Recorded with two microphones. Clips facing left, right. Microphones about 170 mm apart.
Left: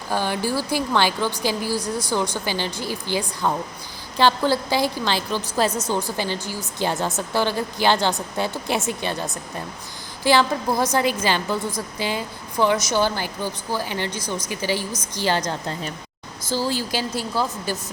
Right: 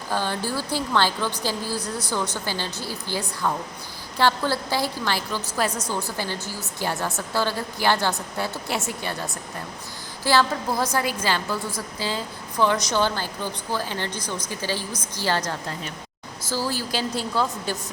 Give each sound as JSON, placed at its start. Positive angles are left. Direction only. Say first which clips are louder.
{"t": 0.1, "sound": "a woman's voice", "louder": "left 3 dB", "side_deg": 15}